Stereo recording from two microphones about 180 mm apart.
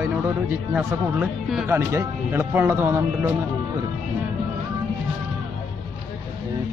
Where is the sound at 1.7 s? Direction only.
15° right (ahead or behind).